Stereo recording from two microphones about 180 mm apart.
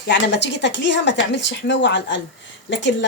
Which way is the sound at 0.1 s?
80° left.